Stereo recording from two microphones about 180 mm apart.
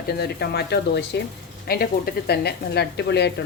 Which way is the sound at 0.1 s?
60° left (ahead or behind).